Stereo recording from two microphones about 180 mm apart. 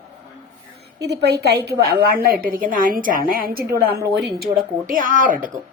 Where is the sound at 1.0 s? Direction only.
70° right (ahead or behind); by 5.5 s 45° right (ahead or behind).